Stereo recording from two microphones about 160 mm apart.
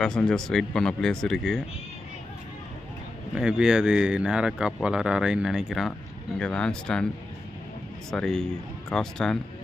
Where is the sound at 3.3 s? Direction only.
5° right (ahead or behind).